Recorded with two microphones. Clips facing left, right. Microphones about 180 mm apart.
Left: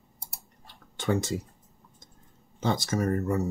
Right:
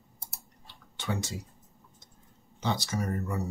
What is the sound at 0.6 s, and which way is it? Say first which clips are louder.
Tick-tock: left 7 dB; 50° left (ahead or behind).